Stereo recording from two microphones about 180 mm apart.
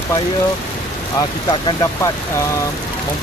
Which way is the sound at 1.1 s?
30° left (ahead or behind).